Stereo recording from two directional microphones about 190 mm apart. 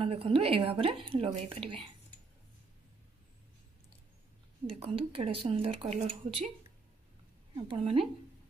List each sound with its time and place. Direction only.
0.0 s speech: 30° right (ahead or behind)
4.7 s speech: 30° right (ahead or behind)
7.5 s speech: 25° right (ahead or behind)